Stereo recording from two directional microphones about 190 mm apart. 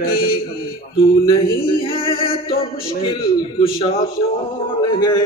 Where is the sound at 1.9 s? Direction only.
30° left (ahead or behind).